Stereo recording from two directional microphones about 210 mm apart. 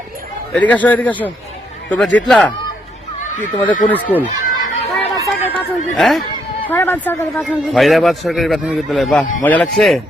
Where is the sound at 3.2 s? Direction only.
35° left (ahead or behind).